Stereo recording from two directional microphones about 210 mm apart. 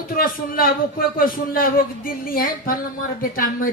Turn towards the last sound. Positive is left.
turn(degrees=40)  # may be behind; listen again after turning